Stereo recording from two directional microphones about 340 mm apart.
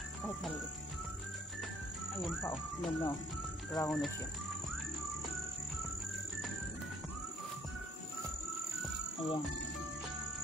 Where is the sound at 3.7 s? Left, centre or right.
Centre.